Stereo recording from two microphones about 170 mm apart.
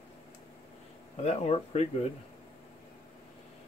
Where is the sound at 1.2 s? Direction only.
40° left (ahead or behind).